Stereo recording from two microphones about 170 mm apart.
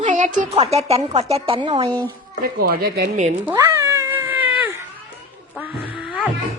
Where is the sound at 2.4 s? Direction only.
60° right (ahead or behind).